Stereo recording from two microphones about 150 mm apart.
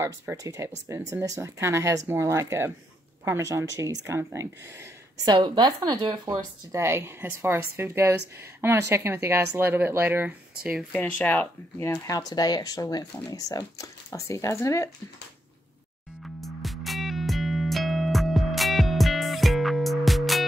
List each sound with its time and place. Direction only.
0.0 s a woman's voice: 20° right (ahead or behind)
5.2 s a woman's voice: 25° right (ahead or behind); by 11.0 s 5° right (ahead or behind)
11.0 s speech: 10° left (ahead or behind)
16.3 s music: centre (ahead or behind)